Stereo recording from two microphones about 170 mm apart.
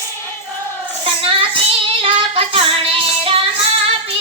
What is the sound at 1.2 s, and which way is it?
Child singing, 35° right (ahead or behind).